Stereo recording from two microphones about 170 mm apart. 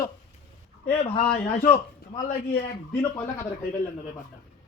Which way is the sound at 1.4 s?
35° left (ahead or behind).